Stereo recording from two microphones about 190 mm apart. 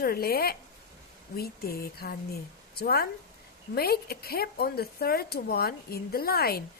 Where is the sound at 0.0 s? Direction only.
50° left (ahead or behind).